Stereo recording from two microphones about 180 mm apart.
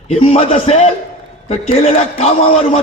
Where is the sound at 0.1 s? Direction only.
35° left (ahead or behind).